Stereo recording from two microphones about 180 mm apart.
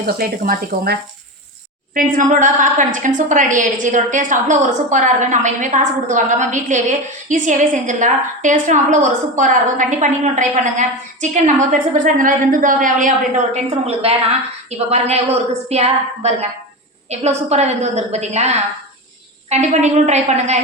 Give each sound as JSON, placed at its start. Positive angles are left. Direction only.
{"t": 0.0, "sound": "speech", "side_deg": -55}
{"t": 2.1, "sound": "a woman's voice", "side_deg": -45}